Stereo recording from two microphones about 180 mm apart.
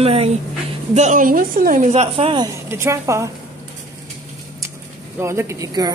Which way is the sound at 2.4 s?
15° right (ahead or behind).